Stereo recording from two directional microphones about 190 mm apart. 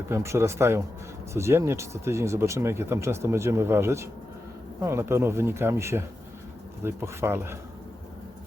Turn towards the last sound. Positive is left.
turn(degrees=-15)  # may be behind; listen again after turning